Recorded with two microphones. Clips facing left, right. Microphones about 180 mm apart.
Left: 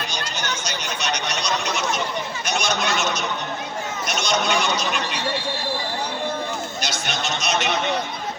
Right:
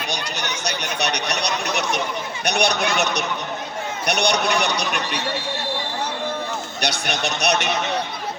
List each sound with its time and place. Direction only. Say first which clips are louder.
0.1 s a sound: right 1 dB; 65° right (ahead or behind)
2.4 s a man's voice: right 5 dB; 65° right (ahead or behind)
6.8 s a man's voice: right 6 dB; 65° right (ahead or behind)